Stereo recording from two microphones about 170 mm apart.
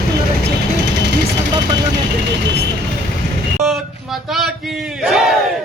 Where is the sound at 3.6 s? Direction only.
Centre (ahead or behind).